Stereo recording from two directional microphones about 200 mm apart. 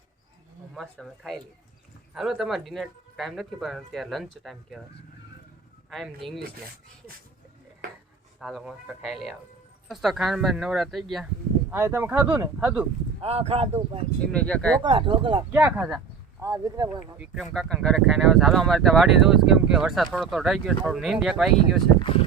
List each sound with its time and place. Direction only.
0.7 s speech: centre (ahead or behind)
5.9 s speech: centre (ahead or behind)
8.4 s speech: centre (ahead or behind)
11.7 s speech: 10° right (ahead or behind)
13.2 s speech: 30° right (ahead or behind)
14.3 s speech: 5° left (ahead or behind)
14.8 s speech: 25° right (ahead or behind)
15.5 s speech: 10° right (ahead or behind)
17.3 s speech: centre (ahead or behind)
21.9 s speech: 25° left (ahead or behind)